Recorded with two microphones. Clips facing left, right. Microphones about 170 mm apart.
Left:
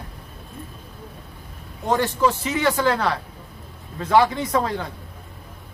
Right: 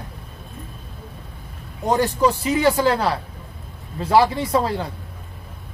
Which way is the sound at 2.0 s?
40° right (ahead or behind).